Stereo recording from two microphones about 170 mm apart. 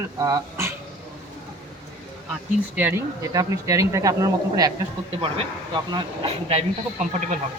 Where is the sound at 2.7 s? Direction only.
10° right (ahead or behind).